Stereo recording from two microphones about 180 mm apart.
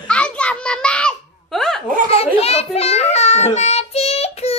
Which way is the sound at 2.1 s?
35° left (ahead or behind).